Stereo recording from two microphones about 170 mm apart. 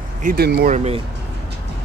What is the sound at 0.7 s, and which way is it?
Speech, 40° right (ahead or behind).